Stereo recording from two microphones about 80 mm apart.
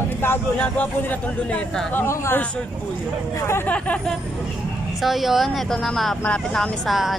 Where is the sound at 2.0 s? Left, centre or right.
Left.